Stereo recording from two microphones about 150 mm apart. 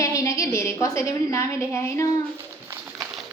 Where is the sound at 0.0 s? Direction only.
20° left (ahead or behind).